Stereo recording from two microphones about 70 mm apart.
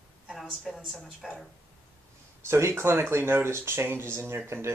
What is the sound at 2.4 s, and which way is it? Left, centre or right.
Speech, right.